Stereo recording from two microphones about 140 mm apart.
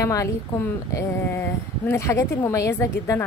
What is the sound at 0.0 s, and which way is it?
A woman's voice, 20° left (ahead or behind).